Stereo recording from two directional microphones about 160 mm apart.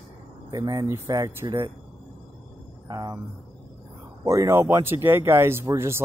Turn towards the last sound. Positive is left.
turn(degrees=-15)  # may be behind; listen again after turning